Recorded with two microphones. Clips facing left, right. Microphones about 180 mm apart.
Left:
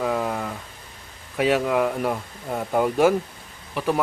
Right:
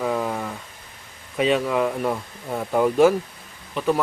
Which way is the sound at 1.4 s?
5° left (ahead or behind).